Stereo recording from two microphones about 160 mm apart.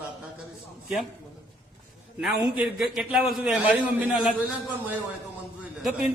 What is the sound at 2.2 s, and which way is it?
A man's voice, 5° right (ahead or behind).